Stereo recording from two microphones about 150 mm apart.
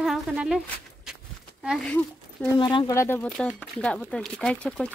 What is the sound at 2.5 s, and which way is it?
Speech, 30° left (ahead or behind).